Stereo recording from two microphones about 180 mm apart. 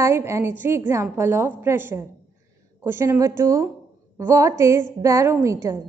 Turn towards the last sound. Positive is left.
turn(degrees=-15)  # may be behind; listen again after turning